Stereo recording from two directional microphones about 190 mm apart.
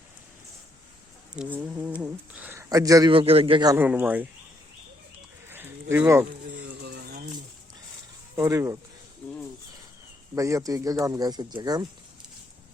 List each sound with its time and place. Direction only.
1.4 s speech: 10° right (ahead or behind); by 3.8 s 25° right (ahead or behind)
3.8 s speech: 10° right (ahead or behind)
5.5 s livestock: 10° right (ahead or behind)
6.8 s a sound: 55° right (ahead or behind)
8.4 s speech: 15° right (ahead or behind)
10.3 s speech: 15° right (ahead or behind)